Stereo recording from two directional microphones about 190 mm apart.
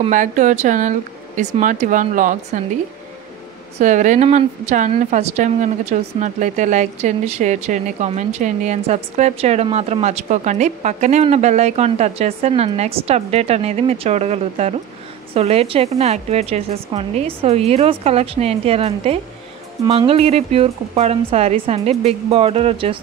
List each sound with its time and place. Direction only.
0.1 s a woman's voice: 40° right (ahead or behind)
3.7 s a woman's voice: 40° right (ahead or behind)